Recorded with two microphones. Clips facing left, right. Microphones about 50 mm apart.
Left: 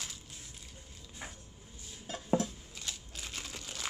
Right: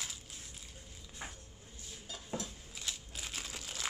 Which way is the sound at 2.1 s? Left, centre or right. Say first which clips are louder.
Left 7 dB; left.